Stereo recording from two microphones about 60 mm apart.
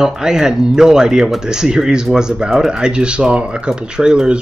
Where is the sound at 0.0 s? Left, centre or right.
Centre.